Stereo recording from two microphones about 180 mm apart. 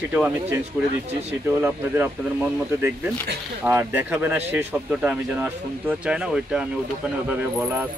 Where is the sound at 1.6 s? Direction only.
10° right (ahead or behind).